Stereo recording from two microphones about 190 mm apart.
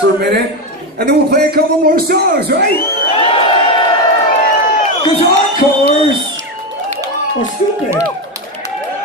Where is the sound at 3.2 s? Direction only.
30° left (ahead or behind).